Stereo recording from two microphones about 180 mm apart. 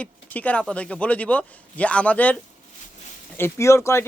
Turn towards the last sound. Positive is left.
turn(degrees=15)  # may be behind; listen again after turning